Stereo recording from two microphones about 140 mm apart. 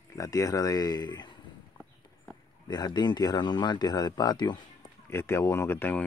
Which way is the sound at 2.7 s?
30° left (ahead or behind).